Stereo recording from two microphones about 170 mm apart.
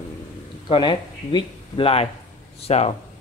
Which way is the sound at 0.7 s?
30° left (ahead or behind).